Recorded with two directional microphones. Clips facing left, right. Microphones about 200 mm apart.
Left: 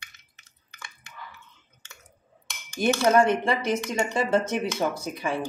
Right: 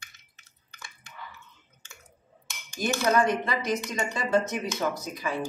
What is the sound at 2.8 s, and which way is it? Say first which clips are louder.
Speech: left 4 dB; 30° left (ahead or behind).